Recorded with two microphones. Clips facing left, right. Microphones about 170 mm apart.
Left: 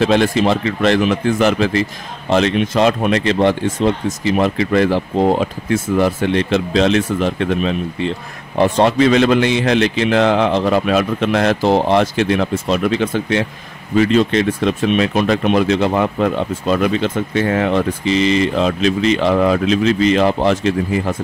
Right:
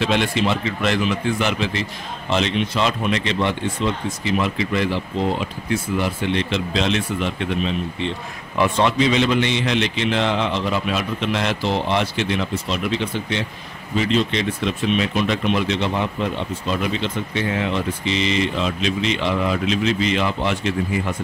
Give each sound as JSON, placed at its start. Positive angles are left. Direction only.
{"t": 0.0, "sound": "speech", "side_deg": 40}